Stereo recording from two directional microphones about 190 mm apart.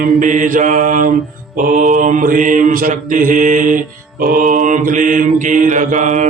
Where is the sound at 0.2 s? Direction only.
45° right (ahead or behind).